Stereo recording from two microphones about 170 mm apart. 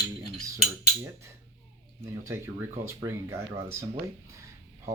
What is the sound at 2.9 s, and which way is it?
Speech, 15° right (ahead or behind).